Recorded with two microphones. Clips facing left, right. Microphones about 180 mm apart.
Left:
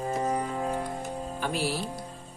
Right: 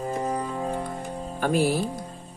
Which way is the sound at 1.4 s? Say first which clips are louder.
Right 8 dB; 50° right (ahead or behind).